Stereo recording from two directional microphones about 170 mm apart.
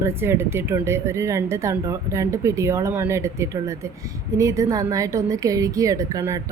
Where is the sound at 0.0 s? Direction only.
15° right (ahead or behind).